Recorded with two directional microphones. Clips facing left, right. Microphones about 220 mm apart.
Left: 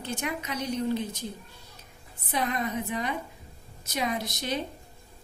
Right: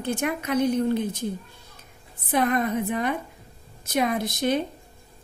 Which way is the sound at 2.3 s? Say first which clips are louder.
Right 7 dB; 55° right (ahead or behind).